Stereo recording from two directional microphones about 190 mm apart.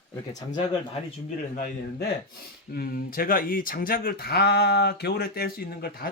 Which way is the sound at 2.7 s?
50° left (ahead or behind).